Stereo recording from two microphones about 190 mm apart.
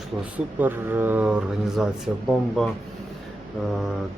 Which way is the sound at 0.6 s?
10° right (ahead or behind).